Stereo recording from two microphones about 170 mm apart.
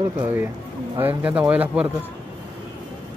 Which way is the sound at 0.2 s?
15° right (ahead or behind).